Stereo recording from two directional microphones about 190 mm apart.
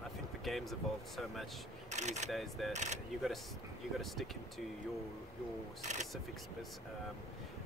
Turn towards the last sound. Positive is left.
turn(degrees=-40)  # may be behind; listen again after turning